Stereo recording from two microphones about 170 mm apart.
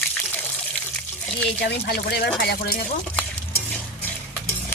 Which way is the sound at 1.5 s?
80° left.